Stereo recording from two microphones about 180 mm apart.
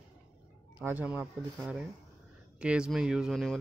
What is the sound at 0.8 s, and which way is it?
A man's voice, 10° right (ahead or behind).